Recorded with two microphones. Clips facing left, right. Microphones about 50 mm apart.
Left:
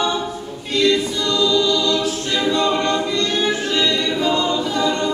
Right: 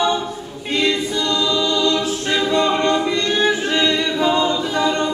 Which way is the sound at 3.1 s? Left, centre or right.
Right.